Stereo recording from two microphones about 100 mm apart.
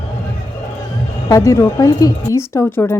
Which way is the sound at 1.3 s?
30° left (ahead or behind).